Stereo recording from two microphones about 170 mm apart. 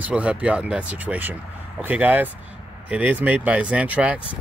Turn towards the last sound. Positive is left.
turn(degrees=-10)  # may be behind; listen again after turning